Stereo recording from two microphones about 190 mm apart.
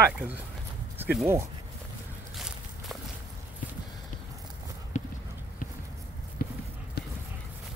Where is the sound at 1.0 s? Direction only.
10° right (ahead or behind).